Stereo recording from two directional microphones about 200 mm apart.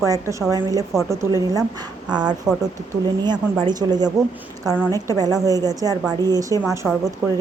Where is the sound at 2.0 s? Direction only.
5° right (ahead or behind).